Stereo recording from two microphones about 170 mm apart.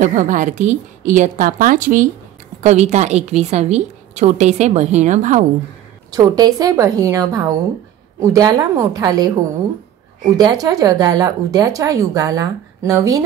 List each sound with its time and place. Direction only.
0.0 s a woman's voice: 45° right (ahead or behind)
6.1 s speech: 20° right (ahead or behind)
10.3 s speech: 20° right (ahead or behind)